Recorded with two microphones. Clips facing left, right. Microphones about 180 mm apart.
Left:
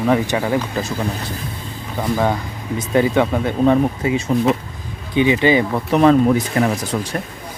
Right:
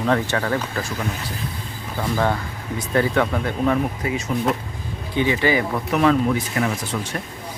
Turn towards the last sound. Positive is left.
turn(degrees=40)  # may be behind; listen again after turning